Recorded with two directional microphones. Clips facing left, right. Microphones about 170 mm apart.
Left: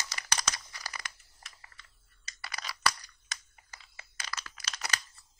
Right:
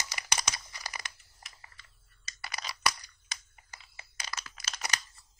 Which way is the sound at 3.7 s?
20° right (ahead or behind).